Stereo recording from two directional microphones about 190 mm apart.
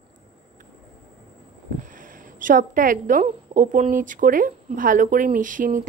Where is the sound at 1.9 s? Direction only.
45° right (ahead or behind).